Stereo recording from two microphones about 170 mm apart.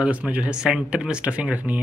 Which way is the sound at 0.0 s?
10° right (ahead or behind).